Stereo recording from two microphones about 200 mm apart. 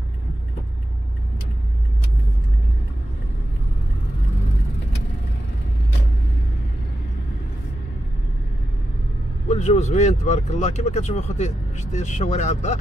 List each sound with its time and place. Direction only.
9.5 s speech: 35° left (ahead or behind)